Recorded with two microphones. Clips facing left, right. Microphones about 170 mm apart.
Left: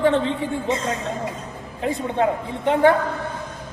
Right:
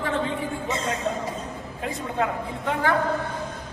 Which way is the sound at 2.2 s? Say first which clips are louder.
Left 5 dB; 25° left (ahead or behind).